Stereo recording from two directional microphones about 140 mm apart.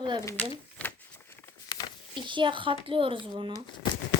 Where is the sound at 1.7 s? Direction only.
35° left (ahead or behind).